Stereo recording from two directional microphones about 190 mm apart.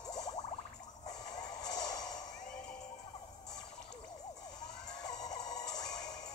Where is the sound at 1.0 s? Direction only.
20° left (ahead or behind).